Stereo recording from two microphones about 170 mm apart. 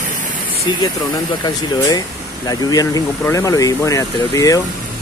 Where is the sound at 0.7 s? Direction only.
25° left (ahead or behind).